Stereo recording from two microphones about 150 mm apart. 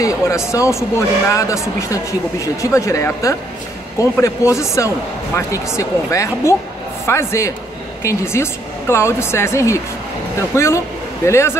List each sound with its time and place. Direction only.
0.0 s speech: 20° left (ahead or behind)